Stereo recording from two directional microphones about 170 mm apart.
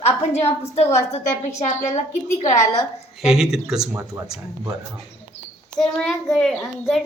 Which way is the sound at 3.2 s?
5° right (ahead or behind).